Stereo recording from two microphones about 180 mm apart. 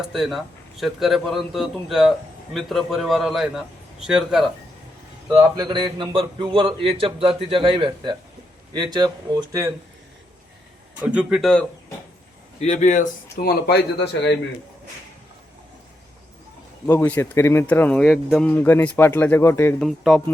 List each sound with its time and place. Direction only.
0.1 s a man's voice: centre (ahead or behind)
5.3 s speech: 20° right (ahead or behind)
11.0 s a man's voice: 5° right (ahead or behind)
12.5 s speech: 40° left (ahead or behind)
13.4 s speech: 60° left (ahead or behind)
16.8 s speech: 10° left (ahead or behind)
19.8 s a man's voice: centre (ahead or behind)